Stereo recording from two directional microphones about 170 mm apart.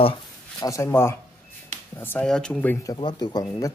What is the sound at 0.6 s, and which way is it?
Speech, 20° left (ahead or behind).